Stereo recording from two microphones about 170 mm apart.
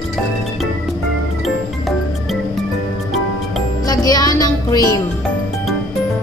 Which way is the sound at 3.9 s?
20° left (ahead or behind).